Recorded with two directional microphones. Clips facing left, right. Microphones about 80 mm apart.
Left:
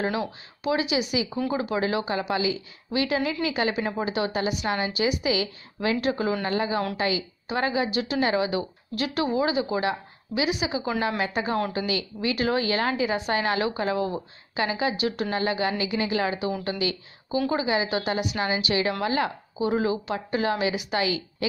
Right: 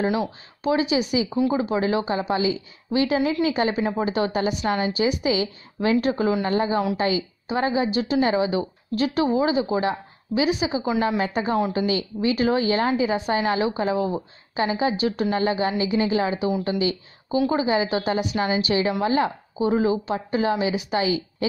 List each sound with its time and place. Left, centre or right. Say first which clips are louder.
0.0 s speech: right 4 dB; centre
0.7 s speech: right 4 dB; right
1.3 s speech: right 4 dB; right
14.5 s speech: right 3 dB; right